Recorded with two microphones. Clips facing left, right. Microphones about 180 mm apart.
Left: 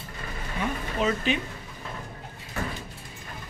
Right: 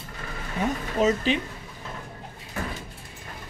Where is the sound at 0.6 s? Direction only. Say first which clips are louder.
Right 4 dB; 40° right (ahead or behind).